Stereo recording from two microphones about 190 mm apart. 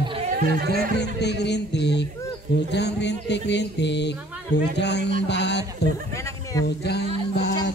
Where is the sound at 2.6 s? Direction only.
65° left (ahead or behind).